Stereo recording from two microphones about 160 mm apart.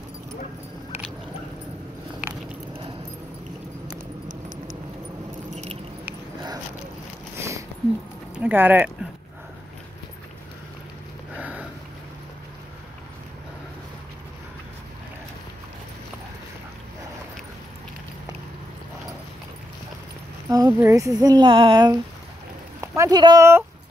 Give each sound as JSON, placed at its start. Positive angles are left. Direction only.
{"t": 5.5, "sound": "keys jangling", "side_deg": -45}
{"t": 7.3, "sound": "a sound", "side_deg": -15}
{"t": 8.4, "sound": "speech", "side_deg": -10}
{"t": 11.3, "sound": "sniff", "side_deg": -10}
{"t": 20.4, "sound": "speech", "side_deg": -20}